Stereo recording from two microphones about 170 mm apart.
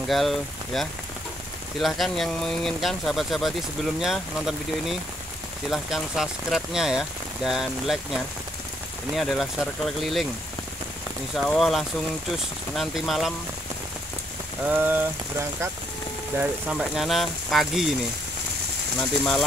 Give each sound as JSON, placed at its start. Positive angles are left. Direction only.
{"t": 0.1, "sound": "speech", "side_deg": 0}
{"t": 11.3, "sound": "speech", "side_deg": 0}
{"t": 14.7, "sound": "speech", "side_deg": -10}
{"t": 16.7, "sound": "speech", "side_deg": 0}
{"t": 18.9, "sound": "speech", "side_deg": 0}